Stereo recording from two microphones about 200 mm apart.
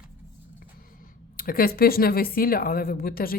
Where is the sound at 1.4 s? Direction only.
45° left (ahead or behind).